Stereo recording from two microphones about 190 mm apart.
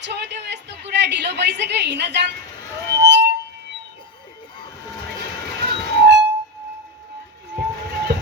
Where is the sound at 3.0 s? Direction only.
65° right (ahead or behind).